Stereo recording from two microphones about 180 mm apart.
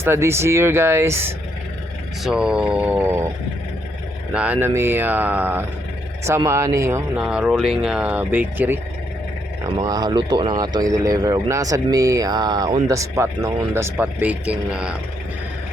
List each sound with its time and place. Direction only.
0.0 s speech: 15° right (ahead or behind)
4.3 s speech: 5° right (ahead or behind)
9.8 s speech: 20° right (ahead or behind); by 14.9 s 5° right (ahead or behind)